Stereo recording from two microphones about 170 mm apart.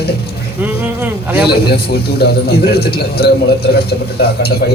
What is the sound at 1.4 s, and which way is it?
A man's voice, 70° left (ahead or behind).